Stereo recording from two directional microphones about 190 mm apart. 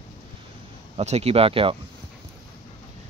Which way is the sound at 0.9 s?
35° right (ahead or behind).